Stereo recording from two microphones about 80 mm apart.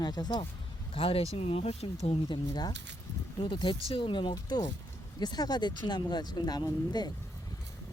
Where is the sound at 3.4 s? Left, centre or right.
Left.